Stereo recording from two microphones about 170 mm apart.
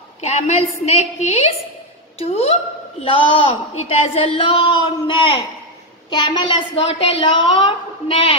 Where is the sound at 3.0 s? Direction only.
30° left (ahead or behind).